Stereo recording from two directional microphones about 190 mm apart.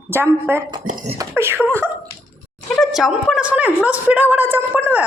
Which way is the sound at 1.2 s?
15° right (ahead or behind).